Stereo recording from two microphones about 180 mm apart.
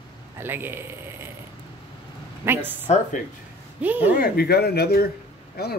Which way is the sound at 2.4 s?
10° right (ahead or behind).